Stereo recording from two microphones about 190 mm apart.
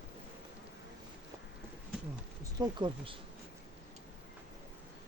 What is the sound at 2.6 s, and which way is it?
Speech, 25° right (ahead or behind).